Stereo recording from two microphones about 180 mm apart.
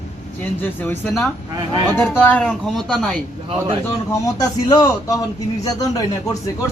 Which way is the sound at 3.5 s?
30° right (ahead or behind).